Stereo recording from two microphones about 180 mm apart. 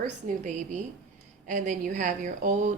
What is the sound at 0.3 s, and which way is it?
A woman's voice, 40° right (ahead or behind).